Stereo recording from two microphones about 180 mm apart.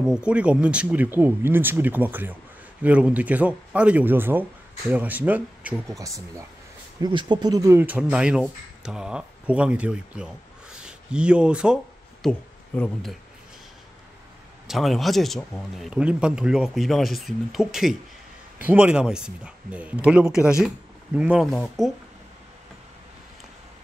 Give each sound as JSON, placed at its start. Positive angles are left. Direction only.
{"t": 0.0, "sound": "speech", "side_deg": -5}
{"t": 14.7, "sound": "speech", "side_deg": 0}